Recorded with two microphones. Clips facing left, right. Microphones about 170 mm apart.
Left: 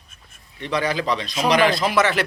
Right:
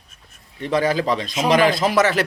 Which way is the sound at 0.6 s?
45° right (ahead or behind).